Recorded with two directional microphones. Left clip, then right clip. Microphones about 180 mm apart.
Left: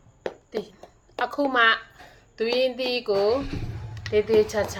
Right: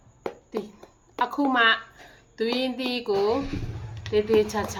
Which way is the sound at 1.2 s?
15° right (ahead or behind).